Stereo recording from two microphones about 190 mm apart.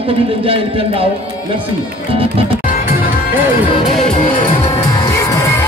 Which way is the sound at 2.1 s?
30° right (ahead or behind).